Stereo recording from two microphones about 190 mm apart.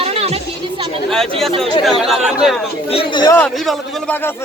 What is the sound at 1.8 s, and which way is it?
Speech, centre (ahead or behind).